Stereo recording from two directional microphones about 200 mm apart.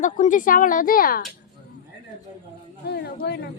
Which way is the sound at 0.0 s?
40° left (ahead or behind).